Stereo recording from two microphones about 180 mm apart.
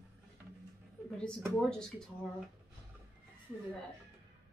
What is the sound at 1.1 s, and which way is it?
Speech, 5° left (ahead or behind).